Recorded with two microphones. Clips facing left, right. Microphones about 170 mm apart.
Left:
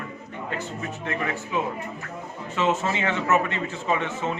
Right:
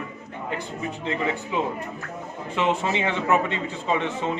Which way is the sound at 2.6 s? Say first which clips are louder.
Even; 15° right (ahead or behind).